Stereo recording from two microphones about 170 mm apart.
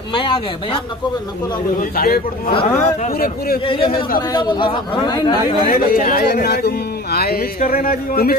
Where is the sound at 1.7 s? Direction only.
60° left (ahead or behind).